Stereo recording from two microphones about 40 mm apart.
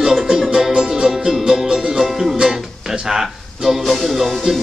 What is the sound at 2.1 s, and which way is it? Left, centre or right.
Speech, centre.